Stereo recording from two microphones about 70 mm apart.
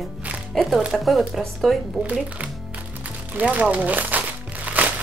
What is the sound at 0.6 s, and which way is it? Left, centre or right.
Speech, centre.